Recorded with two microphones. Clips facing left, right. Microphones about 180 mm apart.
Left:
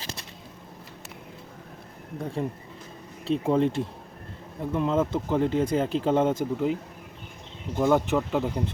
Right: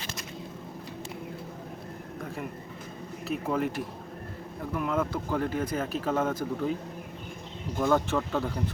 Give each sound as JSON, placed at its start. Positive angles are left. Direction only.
{"t": 2.4, "sound": "speech", "side_deg": 30}
{"t": 7.8, "sound": "speech", "side_deg": 15}